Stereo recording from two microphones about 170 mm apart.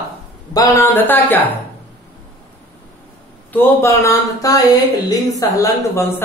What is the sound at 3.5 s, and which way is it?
Speech, 15° left (ahead or behind).